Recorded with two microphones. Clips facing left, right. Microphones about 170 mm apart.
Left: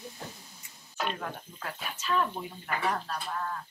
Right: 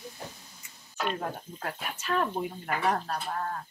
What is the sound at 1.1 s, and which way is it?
Speech, 40° right (ahead or behind).